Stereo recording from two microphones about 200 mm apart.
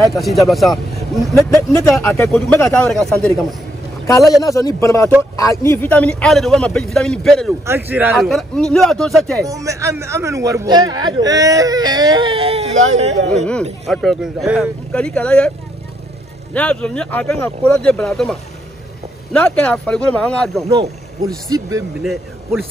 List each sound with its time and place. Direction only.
0.1 s a man's voice: centre (ahead or behind)
1.7 s a man's voice: 15° left (ahead or behind)
4.4 s a man's voice: 15° left (ahead or behind)
7.6 s a man's voice: 10° right (ahead or behind)
9.4 s speech: 15° right (ahead or behind); by 13.5 s 35° right (ahead or behind)
13.8 s a man's voice: centre (ahead or behind)
16.5 s a man's voice: 5° left (ahead or behind)
20.7 s speech: 30° right (ahead or behind)
21.5 s speech: 15° right (ahead or behind)
22.0 s speech: centre (ahead or behind)